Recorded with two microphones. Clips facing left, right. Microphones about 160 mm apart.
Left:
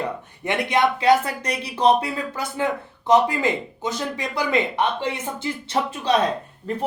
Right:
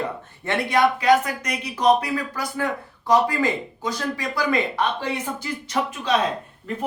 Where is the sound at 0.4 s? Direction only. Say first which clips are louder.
Right 1 dB; 20° left (ahead or behind).